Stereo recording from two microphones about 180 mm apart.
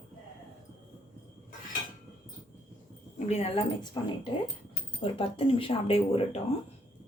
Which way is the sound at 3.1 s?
35° left (ahead or behind).